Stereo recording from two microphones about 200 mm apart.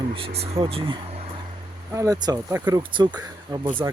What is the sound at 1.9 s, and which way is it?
Speech, 15° right (ahead or behind).